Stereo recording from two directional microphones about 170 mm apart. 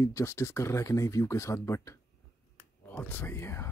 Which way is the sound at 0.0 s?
15° left (ahead or behind).